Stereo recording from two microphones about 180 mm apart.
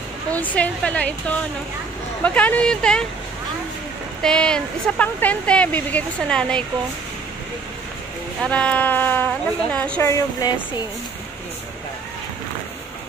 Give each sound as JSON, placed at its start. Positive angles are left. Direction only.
{"t": 0.3, "sound": "speech", "side_deg": 10}
{"t": 2.2, "sound": "speech", "side_deg": 10}
{"t": 4.2, "sound": "speech", "side_deg": 5}
{"t": 8.4, "sound": "speech", "side_deg": 5}